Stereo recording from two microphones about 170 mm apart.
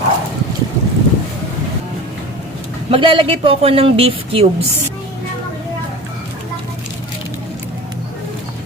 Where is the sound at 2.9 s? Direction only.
30° right (ahead or behind).